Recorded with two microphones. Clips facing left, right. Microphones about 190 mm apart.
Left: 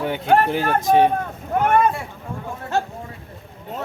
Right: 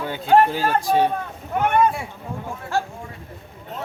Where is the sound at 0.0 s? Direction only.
20° left (ahead or behind).